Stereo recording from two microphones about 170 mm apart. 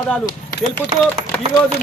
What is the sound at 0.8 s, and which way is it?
Speech, 10° right (ahead or behind).